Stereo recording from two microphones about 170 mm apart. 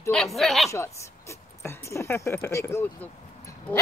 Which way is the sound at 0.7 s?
15° left (ahead or behind).